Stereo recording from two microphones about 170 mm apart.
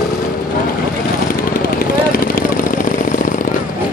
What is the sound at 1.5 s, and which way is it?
Vehicle, 60° left (ahead or behind).